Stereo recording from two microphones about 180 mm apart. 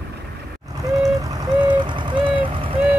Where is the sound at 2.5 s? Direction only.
30° right (ahead or behind).